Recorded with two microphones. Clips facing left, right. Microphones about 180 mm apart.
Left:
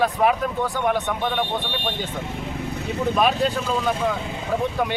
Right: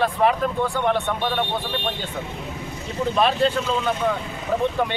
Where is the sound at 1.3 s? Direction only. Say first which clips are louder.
Even; 5° left (ahead or behind).